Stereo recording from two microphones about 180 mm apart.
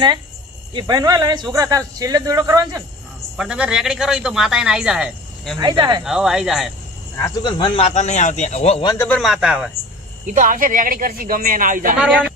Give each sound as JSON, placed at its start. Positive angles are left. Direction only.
{"t": 0.7, "sound": "speech", "side_deg": -25}
{"t": 3.3, "sound": "speech", "side_deg": -5}
{"t": 5.5, "sound": "speech", "side_deg": -25}
{"t": 6.1, "sound": "speech", "side_deg": 0}
{"t": 7.2, "sound": "speech", "side_deg": 20}
{"t": 8.9, "sound": "speech", "side_deg": 10}
{"t": 10.2, "sound": "speech", "side_deg": -45}
{"t": 11.9, "sound": "speech", "side_deg": -5}